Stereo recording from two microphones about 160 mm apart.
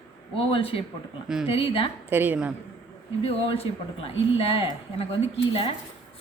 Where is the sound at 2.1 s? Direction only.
10° right (ahead or behind).